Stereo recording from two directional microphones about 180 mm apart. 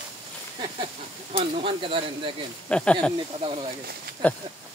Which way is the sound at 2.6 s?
5° left (ahead or behind).